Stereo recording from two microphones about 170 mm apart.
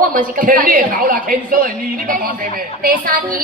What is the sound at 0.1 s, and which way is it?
Speech, 55° right (ahead or behind).